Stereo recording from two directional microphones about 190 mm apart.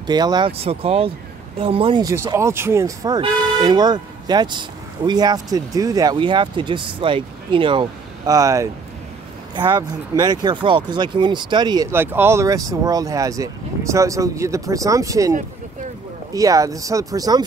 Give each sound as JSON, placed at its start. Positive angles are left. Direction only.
{"t": 0.0, "sound": "speech", "side_deg": -20}
{"t": 16.3, "sound": "speech", "side_deg": -20}